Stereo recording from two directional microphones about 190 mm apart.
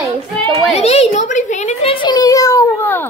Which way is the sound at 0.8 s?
35° left (ahead or behind).